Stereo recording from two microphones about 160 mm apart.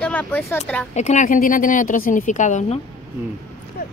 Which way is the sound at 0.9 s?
45° left (ahead or behind).